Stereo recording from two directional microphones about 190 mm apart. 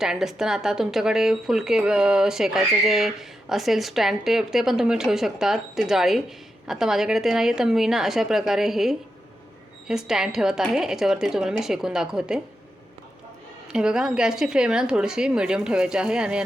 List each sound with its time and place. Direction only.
0.0 s speech: centre (ahead or behind)
13.7 s speech: 5° right (ahead or behind)